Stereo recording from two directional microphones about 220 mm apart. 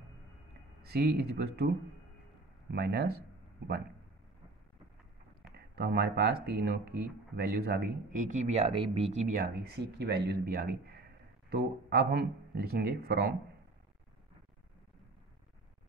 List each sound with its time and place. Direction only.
0.8 s speech: 45° right (ahead or behind)
2.7 s speech: 45° right (ahead or behind)
5.8 s speech: 50° right (ahead or behind); by 9.2 s 25° right (ahead or behind)
9.3 s speech: 45° right (ahead or behind)